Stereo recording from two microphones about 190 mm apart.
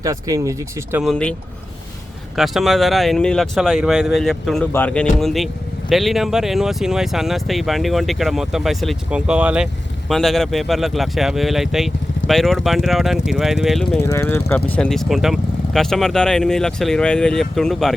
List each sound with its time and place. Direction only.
0.0 s speech: 20° right (ahead or behind)
1.0 s speech: 5° left (ahead or behind)
14.1 s speech: 15° left (ahead or behind)